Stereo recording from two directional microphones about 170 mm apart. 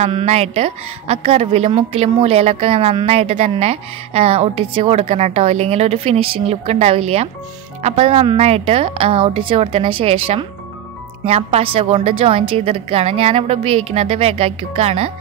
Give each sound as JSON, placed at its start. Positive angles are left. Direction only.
{"t": 0.0, "sound": "a woman's voice", "side_deg": -40}